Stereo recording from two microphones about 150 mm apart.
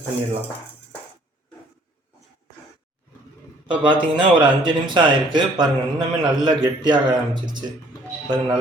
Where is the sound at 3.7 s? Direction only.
30° right (ahead or behind).